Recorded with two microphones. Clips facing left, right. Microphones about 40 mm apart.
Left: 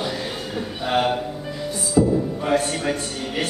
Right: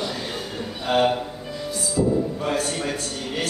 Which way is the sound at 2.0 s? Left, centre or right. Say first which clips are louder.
Left 4 dB; left.